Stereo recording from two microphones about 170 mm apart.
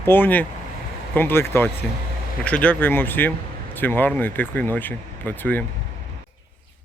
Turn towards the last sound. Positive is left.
turn(degrees=10)  # may be behind; listen again after turning